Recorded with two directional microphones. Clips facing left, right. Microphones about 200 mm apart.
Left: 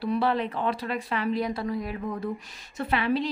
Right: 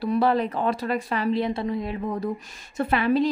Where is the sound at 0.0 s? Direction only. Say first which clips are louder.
Right 4 dB; 45° right (ahead or behind); by 2.1 s 25° right (ahead or behind).